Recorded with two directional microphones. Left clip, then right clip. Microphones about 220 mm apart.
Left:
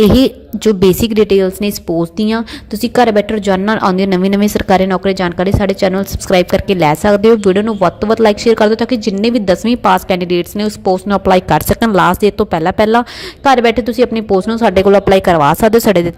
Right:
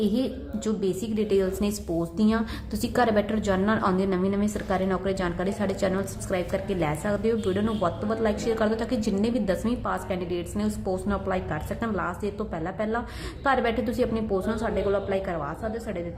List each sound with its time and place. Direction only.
0.2 s a woman's voice: 40° left (ahead or behind)